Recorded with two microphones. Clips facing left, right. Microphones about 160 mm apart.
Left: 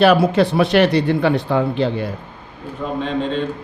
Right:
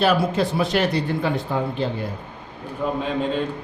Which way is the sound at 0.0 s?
70° left (ahead or behind).